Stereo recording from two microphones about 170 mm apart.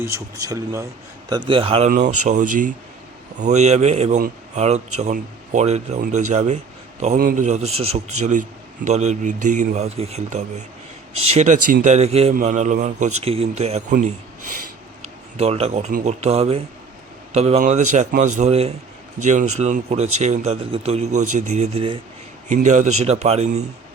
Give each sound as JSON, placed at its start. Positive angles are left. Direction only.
{"t": 0.0, "sound": "speech", "side_deg": -20}
{"t": 1.5, "sound": "speech", "side_deg": -30}
{"t": 2.0, "sound": "a man's voice", "side_deg": -45}
{"t": 12.3, "sound": "a man's voice", "side_deg": -50}
{"t": 15.4, "sound": "speech", "side_deg": -35}
{"t": 15.9, "sound": "speech", "side_deg": -55}
{"t": 16.2, "sound": "a man's voice", "side_deg": -35}
{"t": 22.4, "sound": "speech", "side_deg": -45}